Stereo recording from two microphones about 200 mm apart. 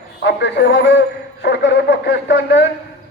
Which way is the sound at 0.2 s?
60° left (ahead or behind).